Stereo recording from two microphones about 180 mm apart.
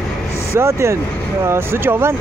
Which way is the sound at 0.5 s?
15° right (ahead or behind).